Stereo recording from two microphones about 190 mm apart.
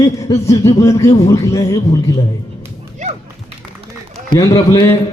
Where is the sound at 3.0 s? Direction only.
40° right (ahead or behind).